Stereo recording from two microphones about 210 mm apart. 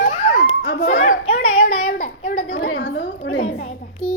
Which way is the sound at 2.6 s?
65° left (ahead or behind).